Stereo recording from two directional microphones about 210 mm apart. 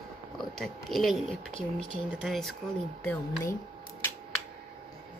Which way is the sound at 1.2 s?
25° left (ahead or behind).